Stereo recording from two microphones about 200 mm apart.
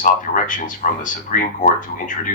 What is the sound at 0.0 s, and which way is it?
Speech, 40° left (ahead or behind).